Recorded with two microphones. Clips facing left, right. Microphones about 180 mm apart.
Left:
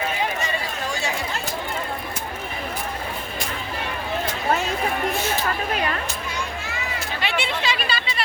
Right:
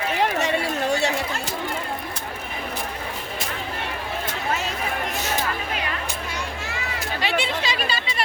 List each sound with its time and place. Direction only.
0.2 s chatter: 70° right (ahead or behind)
7.2 s chatter: 35° right (ahead or behind)